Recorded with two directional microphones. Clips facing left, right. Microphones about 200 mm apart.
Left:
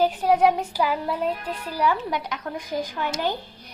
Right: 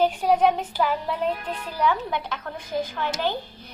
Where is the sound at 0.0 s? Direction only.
5° left (ahead or behind).